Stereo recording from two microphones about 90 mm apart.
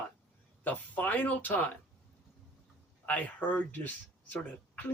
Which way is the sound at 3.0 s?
15° left (ahead or behind).